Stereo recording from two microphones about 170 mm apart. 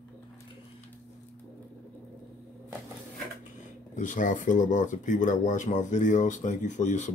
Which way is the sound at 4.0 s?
50° left (ahead or behind).